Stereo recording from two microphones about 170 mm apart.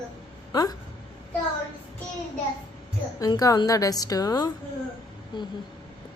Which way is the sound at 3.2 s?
20° left (ahead or behind).